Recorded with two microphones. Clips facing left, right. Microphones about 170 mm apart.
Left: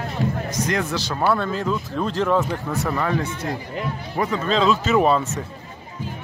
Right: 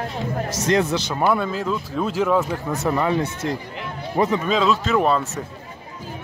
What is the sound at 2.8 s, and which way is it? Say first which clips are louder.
Speech: right 3 dB; 20° right (ahead or behind).